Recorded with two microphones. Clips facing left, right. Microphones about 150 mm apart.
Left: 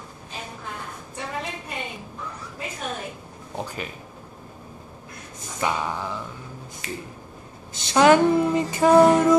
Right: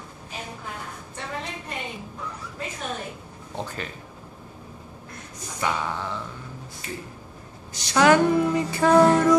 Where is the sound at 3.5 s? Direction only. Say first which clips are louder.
Left 1 dB; 10° left (ahead or behind).